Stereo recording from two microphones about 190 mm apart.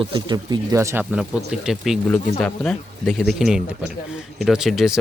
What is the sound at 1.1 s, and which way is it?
Speech, 5° right (ahead or behind).